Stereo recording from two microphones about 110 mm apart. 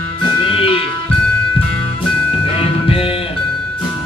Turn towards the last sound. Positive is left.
turn(degrees=55)  # may be behind; listen again after turning